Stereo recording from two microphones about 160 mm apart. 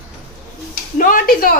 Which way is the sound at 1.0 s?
60° left (ahead or behind).